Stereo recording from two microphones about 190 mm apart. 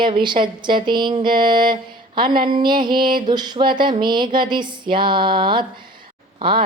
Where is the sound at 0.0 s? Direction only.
25° right (ahead or behind).